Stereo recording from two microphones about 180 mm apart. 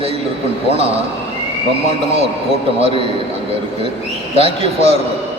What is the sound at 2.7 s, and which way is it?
Speech, 30° right (ahead or behind).